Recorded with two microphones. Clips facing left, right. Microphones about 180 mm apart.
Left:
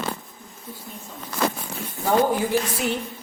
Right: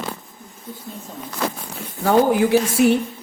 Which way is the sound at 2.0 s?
75° right (ahead or behind).